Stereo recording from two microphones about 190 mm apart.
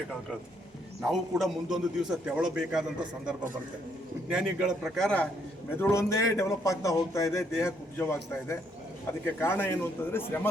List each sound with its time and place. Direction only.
1.0 s a man's voice: centre (ahead or behind)
4.3 s a man's voice: 5° right (ahead or behind); by 10.4 s 10° left (ahead or behind)